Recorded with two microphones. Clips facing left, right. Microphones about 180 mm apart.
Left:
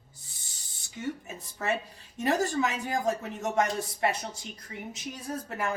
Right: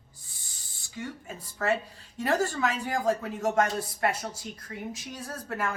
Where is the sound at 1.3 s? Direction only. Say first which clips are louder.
Right 7 dB; 20° left (ahead or behind).